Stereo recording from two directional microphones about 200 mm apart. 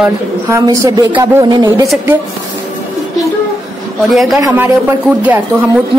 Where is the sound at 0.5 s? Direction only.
15° right (ahead or behind).